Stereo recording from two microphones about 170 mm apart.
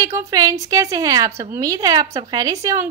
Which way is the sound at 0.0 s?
20° right (ahead or behind).